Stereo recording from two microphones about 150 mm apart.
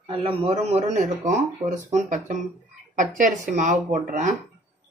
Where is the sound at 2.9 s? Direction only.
60° right (ahead or behind).